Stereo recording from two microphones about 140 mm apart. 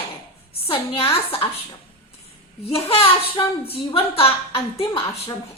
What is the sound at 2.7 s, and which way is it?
A woman's voice, 40° left (ahead or behind).